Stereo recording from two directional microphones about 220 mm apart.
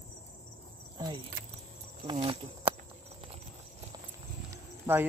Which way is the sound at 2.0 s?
25° right (ahead or behind).